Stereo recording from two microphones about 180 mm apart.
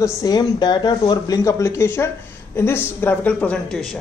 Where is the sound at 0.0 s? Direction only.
20° left (ahead or behind).